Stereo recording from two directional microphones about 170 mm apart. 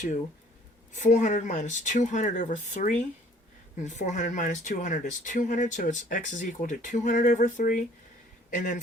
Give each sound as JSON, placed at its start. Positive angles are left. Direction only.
{"t": 0.9, "sound": "speech", "side_deg": 45}